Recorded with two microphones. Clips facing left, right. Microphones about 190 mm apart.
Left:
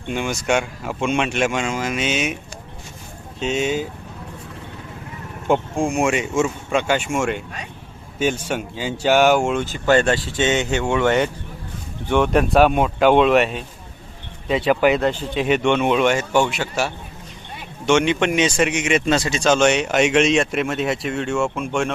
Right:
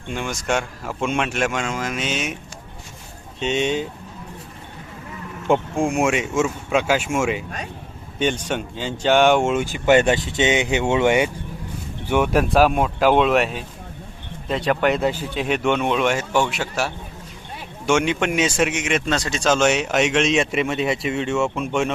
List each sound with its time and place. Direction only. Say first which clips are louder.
0.1 s speech: left 3 dB; centre (ahead or behind)
3.4 s speech: even; centre (ahead or behind)
5.5 s speech: even; 5° right (ahead or behind)
9.6 s speech: right 2 dB; 15° right (ahead or behind)